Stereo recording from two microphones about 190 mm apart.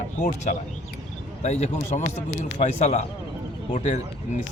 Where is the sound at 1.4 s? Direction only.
35° left (ahead or behind).